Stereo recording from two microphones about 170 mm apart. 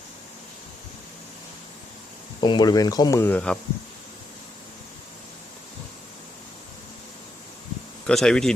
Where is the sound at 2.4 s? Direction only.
25° left (ahead or behind); by 3.6 s 5° left (ahead or behind).